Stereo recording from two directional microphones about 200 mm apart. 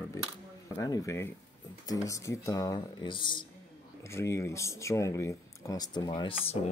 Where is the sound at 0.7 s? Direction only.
15° left (ahead or behind).